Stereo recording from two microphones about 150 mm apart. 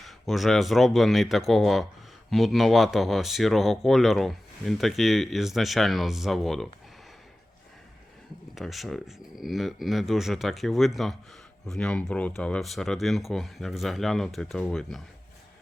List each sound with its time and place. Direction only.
0.0 s speech: centre (ahead or behind)
8.5 s speech: centre (ahead or behind)